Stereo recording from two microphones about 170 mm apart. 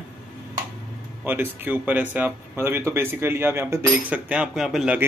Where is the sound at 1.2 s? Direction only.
10° right (ahead or behind).